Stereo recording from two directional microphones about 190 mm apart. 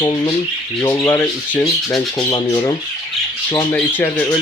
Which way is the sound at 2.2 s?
20° left (ahead or behind).